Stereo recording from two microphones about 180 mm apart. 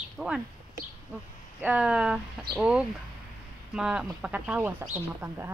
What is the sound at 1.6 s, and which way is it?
Speech, 5° right (ahead or behind).